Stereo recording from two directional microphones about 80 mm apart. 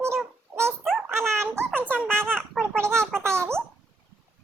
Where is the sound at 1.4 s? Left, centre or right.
Right.